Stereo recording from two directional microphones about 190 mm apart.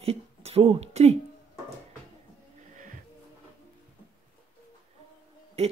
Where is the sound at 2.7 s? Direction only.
45° right (ahead or behind).